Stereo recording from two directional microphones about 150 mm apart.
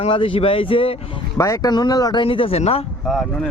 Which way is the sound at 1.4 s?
25° left (ahead or behind).